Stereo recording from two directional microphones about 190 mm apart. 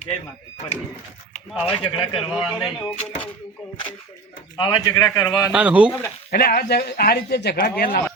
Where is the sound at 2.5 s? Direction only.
Centre (ahead or behind).